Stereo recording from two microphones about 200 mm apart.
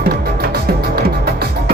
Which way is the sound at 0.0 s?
50° right (ahead or behind).